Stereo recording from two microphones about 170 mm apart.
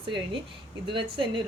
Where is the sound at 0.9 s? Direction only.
30° right (ahead or behind).